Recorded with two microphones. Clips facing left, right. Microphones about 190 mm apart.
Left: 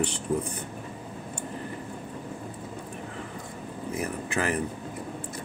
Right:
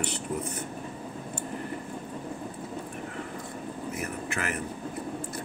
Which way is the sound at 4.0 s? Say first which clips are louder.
Left 6 dB; 30° left (ahead or behind).